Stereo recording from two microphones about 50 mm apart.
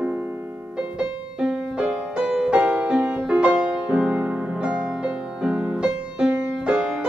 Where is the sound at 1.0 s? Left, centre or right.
Centre.